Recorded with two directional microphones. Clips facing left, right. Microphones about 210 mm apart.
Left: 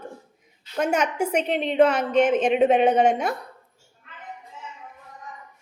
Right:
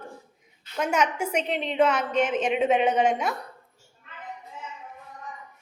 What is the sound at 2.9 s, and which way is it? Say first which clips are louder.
Speech: left 3 dB; 40° left (ahead or behind).